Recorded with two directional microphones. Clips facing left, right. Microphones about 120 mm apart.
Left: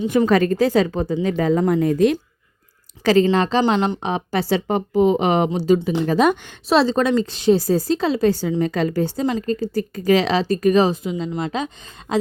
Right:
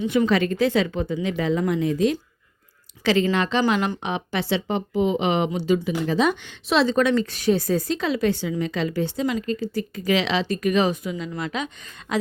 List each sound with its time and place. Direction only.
0.1 s speech: 45° left (ahead or behind)
3.0 s speech: 45° left (ahead or behind)
3.6 s a woman's voice: 25° left (ahead or behind)
4.1 s speech: 40° left (ahead or behind)
6.1 s speech: 50° left (ahead or behind); by 12.1 s 30° left (ahead or behind)